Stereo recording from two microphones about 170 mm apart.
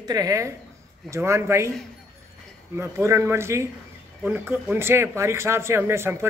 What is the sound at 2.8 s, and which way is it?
Speech, 15° right (ahead or behind).